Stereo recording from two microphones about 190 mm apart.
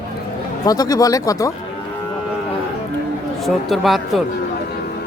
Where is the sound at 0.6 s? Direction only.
20° left (ahead or behind).